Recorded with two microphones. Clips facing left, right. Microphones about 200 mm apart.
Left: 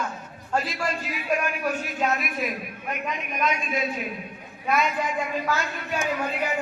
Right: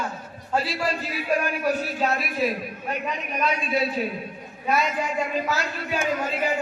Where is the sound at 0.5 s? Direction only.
35° right (ahead or behind).